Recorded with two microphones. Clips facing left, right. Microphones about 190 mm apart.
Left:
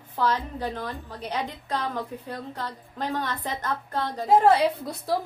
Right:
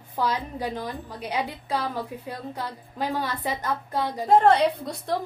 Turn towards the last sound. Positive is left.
turn(degrees=5)  # may be behind; listen again after turning